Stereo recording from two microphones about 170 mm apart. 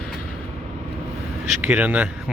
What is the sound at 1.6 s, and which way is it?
Speech, 5° right (ahead or behind).